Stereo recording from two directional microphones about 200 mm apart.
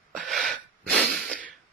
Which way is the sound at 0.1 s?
Centre (ahead or behind).